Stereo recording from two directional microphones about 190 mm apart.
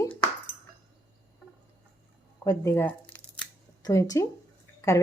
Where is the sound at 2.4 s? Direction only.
15° left (ahead or behind).